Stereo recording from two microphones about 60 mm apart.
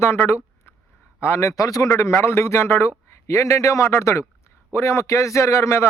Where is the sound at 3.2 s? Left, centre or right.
Left.